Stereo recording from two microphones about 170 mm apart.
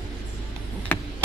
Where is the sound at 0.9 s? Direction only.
10° left (ahead or behind).